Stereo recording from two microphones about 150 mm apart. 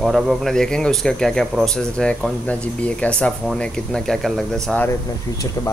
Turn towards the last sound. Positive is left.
turn(degrees=20)  # may be behind; listen again after turning